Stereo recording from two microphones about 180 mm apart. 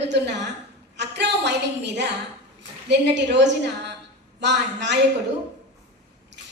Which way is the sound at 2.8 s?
75° right (ahead or behind).